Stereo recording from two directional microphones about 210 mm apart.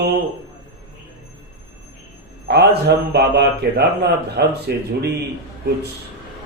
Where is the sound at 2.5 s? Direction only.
50° right (ahead or behind).